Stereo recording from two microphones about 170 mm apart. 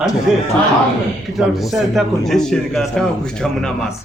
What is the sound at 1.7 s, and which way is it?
A man's voice, centre (ahead or behind).